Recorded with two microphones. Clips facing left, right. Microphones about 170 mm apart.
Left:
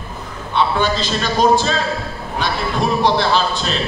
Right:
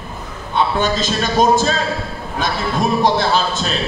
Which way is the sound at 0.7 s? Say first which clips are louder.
Right 1 dB; 45° right (ahead or behind).